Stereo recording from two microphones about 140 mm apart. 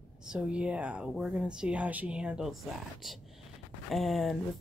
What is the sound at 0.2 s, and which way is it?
Speech, 5° right (ahead or behind).